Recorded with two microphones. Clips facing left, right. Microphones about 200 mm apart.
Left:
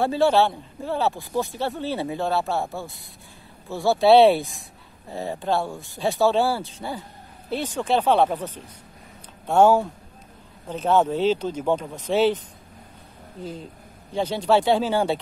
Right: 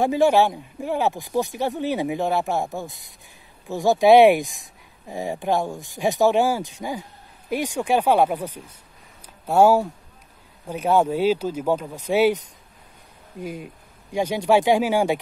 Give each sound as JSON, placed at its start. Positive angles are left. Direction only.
{"t": 0.0, "sound": "speech", "side_deg": -15}
{"t": 13.4, "sound": "speech", "side_deg": -10}